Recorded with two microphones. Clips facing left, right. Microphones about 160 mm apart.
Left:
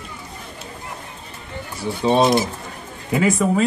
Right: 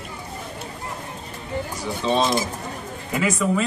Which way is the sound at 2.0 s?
55° left (ahead or behind).